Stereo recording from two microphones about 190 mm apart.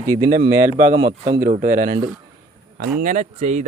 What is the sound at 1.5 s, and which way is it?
Speech, 45° right (ahead or behind).